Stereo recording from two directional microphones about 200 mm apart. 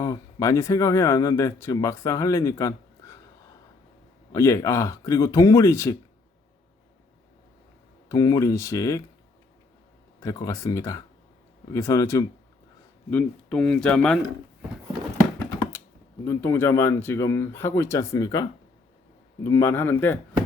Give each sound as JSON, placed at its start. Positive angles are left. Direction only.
{"t": 0.0, "sound": "speech", "side_deg": 15}
{"t": 4.3, "sound": "speech", "side_deg": 15}
{"t": 8.1, "sound": "speech", "side_deg": 15}
{"t": 10.2, "sound": "speech", "side_deg": 15}
{"t": 16.2, "sound": "speech", "side_deg": 10}
{"t": 19.5, "sound": "speech", "side_deg": 15}